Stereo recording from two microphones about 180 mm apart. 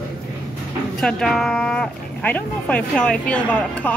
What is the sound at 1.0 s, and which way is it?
Speech, 5° left (ahead or behind).